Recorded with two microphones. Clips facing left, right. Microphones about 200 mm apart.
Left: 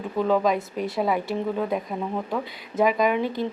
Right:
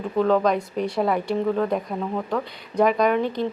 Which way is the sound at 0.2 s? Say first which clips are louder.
Right 2 dB; 5° left (ahead or behind).